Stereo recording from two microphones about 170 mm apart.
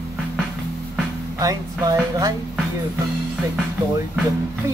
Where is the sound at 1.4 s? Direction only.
20° right (ahead or behind).